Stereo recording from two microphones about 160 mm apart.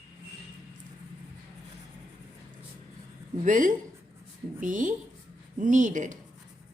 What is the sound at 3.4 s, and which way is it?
Speech, 55° right (ahead or behind).